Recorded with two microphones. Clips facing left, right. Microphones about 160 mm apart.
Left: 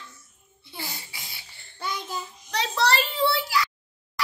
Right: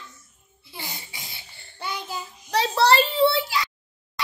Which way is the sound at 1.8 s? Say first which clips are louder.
Even; 10° right (ahead or behind).